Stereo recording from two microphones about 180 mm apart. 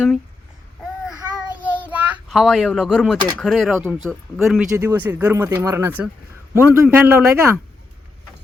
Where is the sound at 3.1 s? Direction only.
25° right (ahead or behind).